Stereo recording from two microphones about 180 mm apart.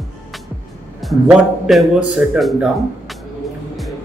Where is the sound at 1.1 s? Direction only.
Centre (ahead or behind).